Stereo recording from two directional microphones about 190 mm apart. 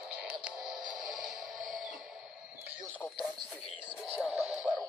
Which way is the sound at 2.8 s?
5° left (ahead or behind).